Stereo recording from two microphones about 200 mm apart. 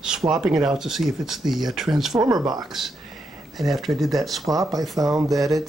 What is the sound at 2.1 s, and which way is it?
Speech, 20° right (ahead or behind).